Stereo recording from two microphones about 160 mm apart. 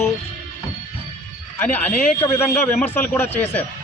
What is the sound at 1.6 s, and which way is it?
A man's voice, 10° left (ahead or behind).